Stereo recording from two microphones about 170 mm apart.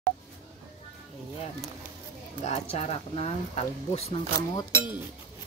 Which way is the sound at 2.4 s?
40° left (ahead or behind).